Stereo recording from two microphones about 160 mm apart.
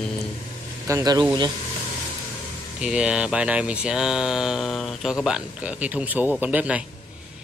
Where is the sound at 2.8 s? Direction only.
5° right (ahead or behind).